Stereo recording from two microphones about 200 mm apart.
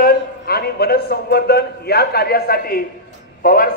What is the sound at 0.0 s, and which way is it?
A man's voice, 50° left (ahead or behind).